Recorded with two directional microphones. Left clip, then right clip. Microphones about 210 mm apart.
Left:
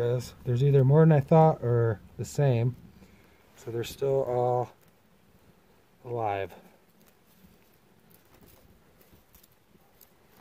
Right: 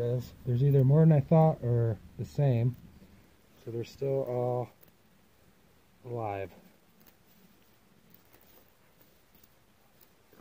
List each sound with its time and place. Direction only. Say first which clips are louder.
0.0 s speech: left 4 dB; 15° left (ahead or behind)
3.7 s speech: left 5 dB; 50° left (ahead or behind)
4.1 s speech: left 5 dB; 10° left (ahead or behind)
6.0 s speech: left 5 dB; 10° left (ahead or behind)